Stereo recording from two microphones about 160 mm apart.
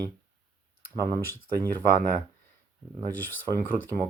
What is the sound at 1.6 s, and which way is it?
Speech, 70° right (ahead or behind).